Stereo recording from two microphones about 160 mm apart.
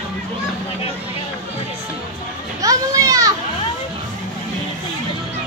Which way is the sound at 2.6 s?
20° right (ahead or behind).